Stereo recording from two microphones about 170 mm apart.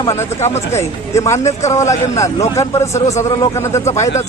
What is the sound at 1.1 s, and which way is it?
A man's voice, 15° left (ahead or behind).